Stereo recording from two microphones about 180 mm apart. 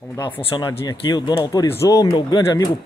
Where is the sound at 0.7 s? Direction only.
20° left (ahead or behind).